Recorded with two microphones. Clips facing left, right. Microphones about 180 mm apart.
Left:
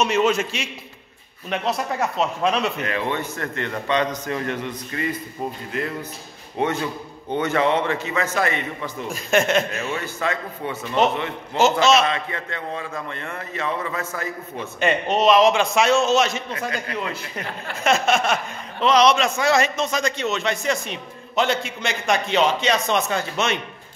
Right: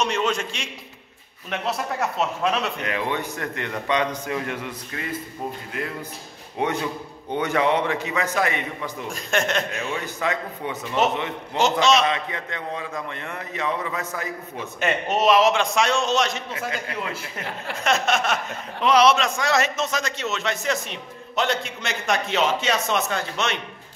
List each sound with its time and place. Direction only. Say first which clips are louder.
0.0 s a man's voice: left 4 dB; 5° left (ahead or behind)
2.8 s a man's voice: left 1 dB; 15° right (ahead or behind)
9.1 s a man's voice: left 5 dB; 5° left (ahead or behind)
10.0 s a man's voice: even; 15° right (ahead or behind)
11.5 s a man's voice: left 2 dB; 5° left (ahead or behind)
12.1 s a man's voice: even; 15° right (ahead or behind)
14.8 s a man's voice: left 3 dB; 5° right (ahead or behind)